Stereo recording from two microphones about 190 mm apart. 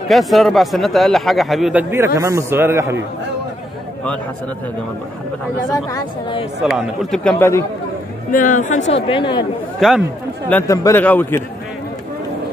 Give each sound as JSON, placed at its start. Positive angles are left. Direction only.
{"t": 0.1, "sound": "a man's voice", "side_deg": 0}
{"t": 5.7, "sound": "speech", "side_deg": 20}
{"t": 6.6, "sound": "a man's voice", "side_deg": 0}
{"t": 8.3, "sound": "speech", "side_deg": 45}
{"t": 9.8, "sound": "speech", "side_deg": 0}
{"t": 10.5, "sound": "a man's voice", "side_deg": 15}